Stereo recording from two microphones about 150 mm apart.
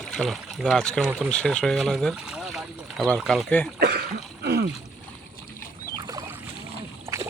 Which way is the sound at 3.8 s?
90° right.